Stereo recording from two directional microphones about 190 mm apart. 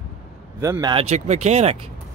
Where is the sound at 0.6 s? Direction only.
15° right (ahead or behind).